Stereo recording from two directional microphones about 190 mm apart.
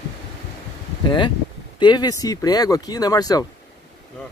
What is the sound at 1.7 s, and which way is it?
Speech, 25° left (ahead or behind).